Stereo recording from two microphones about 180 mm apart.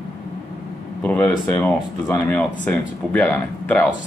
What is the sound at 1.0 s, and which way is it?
Speech, 10° left (ahead or behind).